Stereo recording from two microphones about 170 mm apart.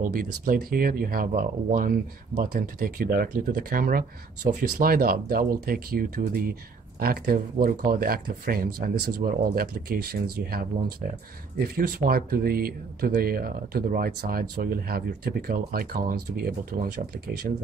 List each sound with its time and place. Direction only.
0.0 s speech: 55° right (ahead or behind)
11.7 s speech: 60° right (ahead or behind)
16.9 s speech: 70° right (ahead or behind)